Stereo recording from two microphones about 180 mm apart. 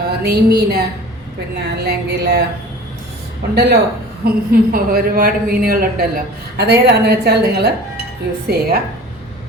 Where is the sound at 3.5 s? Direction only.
65° right (ahead or behind).